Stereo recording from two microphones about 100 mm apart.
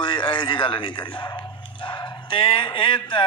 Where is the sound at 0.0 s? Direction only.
55° left (ahead or behind).